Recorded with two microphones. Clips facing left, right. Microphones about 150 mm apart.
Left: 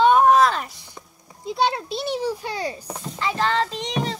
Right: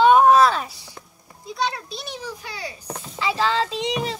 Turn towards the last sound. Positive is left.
turn(degrees=-10)  # may be behind; listen again after turning